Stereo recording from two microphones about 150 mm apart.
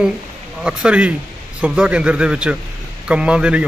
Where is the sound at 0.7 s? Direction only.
5° right (ahead or behind).